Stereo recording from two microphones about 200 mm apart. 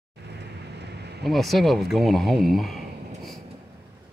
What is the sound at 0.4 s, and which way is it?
Vehicle, 55° right (ahead or behind).